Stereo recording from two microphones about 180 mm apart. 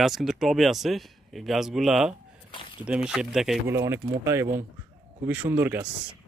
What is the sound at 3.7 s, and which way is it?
Speech, 15° right (ahead or behind).